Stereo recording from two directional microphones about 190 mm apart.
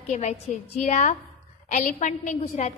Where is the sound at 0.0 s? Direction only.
40° left (ahead or behind).